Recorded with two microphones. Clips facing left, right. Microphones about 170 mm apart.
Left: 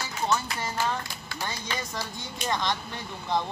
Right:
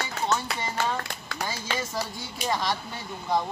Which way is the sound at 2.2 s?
5° right (ahead or behind).